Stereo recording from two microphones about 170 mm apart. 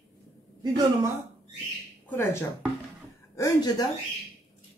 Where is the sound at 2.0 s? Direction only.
15° left (ahead or behind).